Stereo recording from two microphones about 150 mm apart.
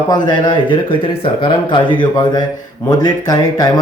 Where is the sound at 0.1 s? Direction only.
30° left (ahead or behind).